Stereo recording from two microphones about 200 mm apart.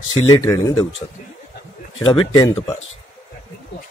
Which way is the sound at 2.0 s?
15° left (ahead or behind).